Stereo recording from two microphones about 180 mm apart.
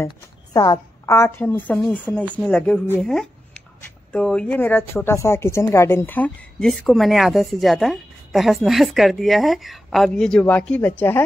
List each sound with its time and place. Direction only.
0.0 s speech: 20° left (ahead or behind)
1.5 s speech: centre (ahead or behind)